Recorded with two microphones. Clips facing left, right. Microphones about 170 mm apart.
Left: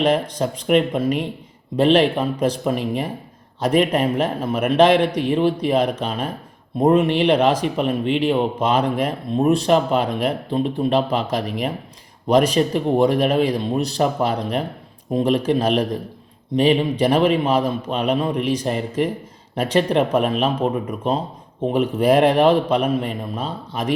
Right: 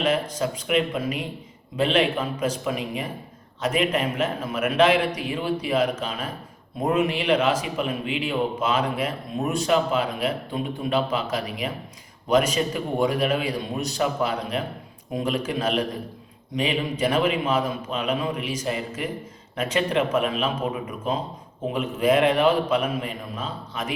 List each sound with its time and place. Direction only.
0.0 s a man's voice: 35° left (ahead or behind)
1.7 s a man's voice: 35° left (ahead or behind)